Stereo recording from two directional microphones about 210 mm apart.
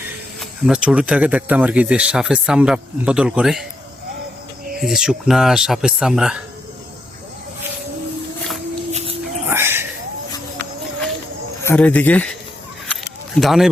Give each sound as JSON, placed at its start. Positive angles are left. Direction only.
{"t": 0.3, "sound": "speech", "side_deg": -5}
{"t": 4.8, "sound": "speech", "side_deg": 0}
{"t": 8.9, "sound": "dog", "side_deg": -30}
{"t": 9.5, "sound": "cat", "side_deg": -10}
{"t": 11.6, "sound": "speech", "side_deg": 10}
{"t": 12.9, "sound": "a sound", "side_deg": 0}